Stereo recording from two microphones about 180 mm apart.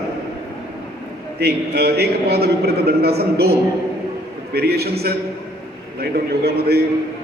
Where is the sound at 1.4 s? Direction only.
65° right (ahead or behind).